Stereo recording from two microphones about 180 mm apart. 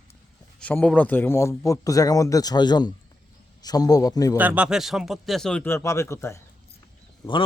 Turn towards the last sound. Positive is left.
turn(degrees=15)  # may be behind; listen again after turning